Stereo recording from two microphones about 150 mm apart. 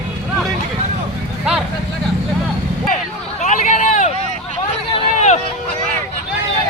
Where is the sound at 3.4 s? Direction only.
55° left (ahead or behind).